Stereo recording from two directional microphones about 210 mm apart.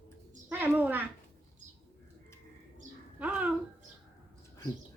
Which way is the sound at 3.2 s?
5° right (ahead or behind).